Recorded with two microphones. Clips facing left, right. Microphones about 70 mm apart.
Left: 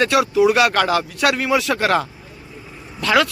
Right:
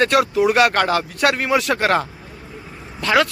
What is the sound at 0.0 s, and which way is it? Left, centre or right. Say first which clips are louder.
Speech: left 1 dB; right.